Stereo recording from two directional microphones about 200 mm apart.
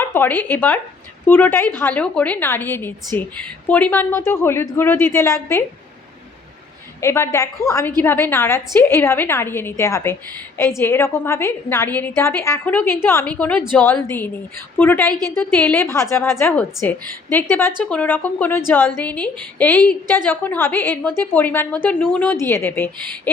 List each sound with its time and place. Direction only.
0.0 s a woman's voice: 10° left (ahead or behind)
7.0 s a woman's voice: 15° left (ahead or behind)